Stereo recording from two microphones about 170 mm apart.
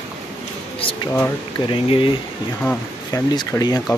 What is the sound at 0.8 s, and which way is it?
Speech, 30° left (ahead or behind).